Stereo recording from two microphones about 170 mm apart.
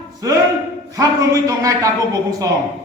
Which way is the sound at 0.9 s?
20° right (ahead or behind).